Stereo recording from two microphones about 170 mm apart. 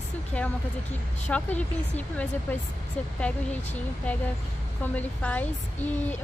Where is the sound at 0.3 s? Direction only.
5° left (ahead or behind).